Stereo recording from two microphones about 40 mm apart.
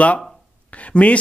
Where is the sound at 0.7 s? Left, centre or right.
Left.